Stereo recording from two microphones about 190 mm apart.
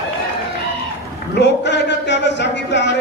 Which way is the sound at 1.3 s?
65° left (ahead or behind).